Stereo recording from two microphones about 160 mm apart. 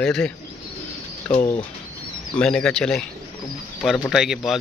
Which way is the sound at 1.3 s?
35° left (ahead or behind).